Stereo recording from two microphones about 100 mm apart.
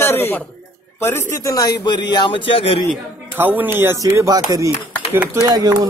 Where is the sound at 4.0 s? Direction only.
35° right (ahead or behind).